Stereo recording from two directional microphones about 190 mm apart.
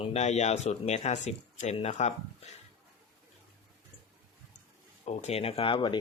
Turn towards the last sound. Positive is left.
turn(degrees=25)  # may be behind; listen again after turning